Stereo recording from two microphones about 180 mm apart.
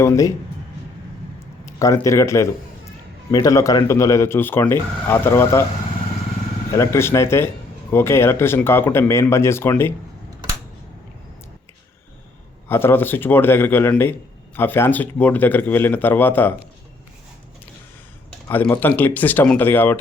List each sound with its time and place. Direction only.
0.0 s a man's voice: 15° left (ahead or behind)
1.6 s a man's voice: 15° left (ahead or behind)
6.7 s a man's voice: 15° left (ahead or behind)
12.6 s a man's voice: 10° left (ahead or behind)
18.4 s a man's voice: 10° left (ahead or behind)